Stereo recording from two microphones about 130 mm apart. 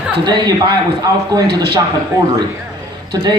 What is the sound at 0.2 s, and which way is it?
Speech, 35° right (ahead or behind).